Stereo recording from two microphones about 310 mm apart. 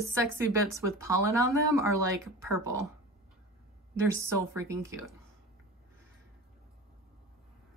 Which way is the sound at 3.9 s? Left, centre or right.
Centre.